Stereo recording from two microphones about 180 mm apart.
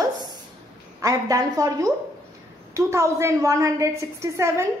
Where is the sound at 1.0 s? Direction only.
20° right (ahead or behind).